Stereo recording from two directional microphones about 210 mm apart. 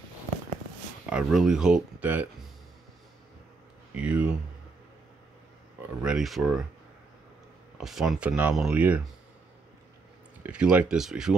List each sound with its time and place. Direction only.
1.1 s speech: 5° right (ahead or behind)
3.9 s speech: 5° right (ahead or behind)
5.8 s speech: 5° right (ahead or behind)
7.7 s speech: 5° right (ahead or behind)
10.4 s speech: 5° right (ahead or behind)